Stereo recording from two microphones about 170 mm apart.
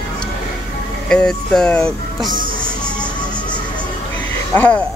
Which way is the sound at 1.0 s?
5° left (ahead or behind).